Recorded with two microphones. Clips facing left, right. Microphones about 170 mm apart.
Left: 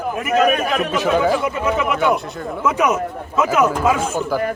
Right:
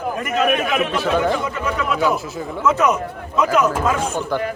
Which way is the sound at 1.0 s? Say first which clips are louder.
Left 4 dB; 10° left (ahead or behind).